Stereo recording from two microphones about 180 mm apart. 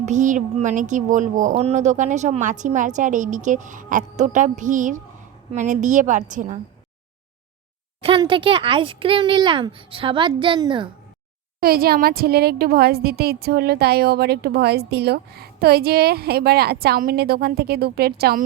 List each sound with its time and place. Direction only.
0.0 s speech: 45° right (ahead or behind)
8.0 s a child's voice: 25° right (ahead or behind)
11.6 s a woman's voice: 55° right (ahead or behind)